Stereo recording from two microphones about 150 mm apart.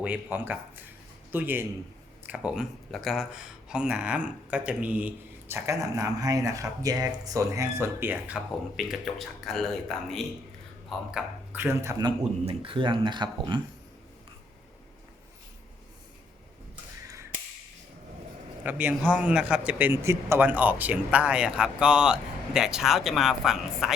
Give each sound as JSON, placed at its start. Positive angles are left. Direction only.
{"t": 0.0, "sound": "speech", "side_deg": -10}
{"t": 11.5, "sound": "speech", "side_deg": -15}
{"t": 12.5, "sound": "speech", "side_deg": -35}
{"t": 18.6, "sound": "speech", "side_deg": -10}